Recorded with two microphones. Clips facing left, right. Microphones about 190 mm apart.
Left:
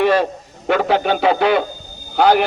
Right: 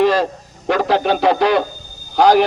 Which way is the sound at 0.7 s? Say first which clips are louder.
Even; 5° left (ahead or behind).